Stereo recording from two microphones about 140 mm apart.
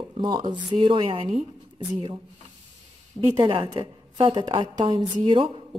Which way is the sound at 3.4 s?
35° right (ahead or behind).